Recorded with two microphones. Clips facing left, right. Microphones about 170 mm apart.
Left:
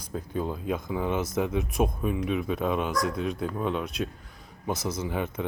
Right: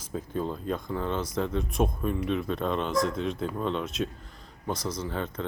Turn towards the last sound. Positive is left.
turn(degrees=10)  # may be behind; listen again after turning